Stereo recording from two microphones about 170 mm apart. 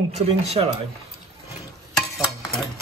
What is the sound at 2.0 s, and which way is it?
Stir, 5° left (ahead or behind).